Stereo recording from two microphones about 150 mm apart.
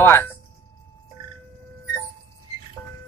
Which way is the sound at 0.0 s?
15° left (ahead or behind).